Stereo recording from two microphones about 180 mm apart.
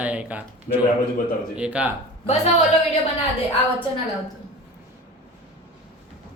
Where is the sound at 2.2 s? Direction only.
40° left (ahead or behind).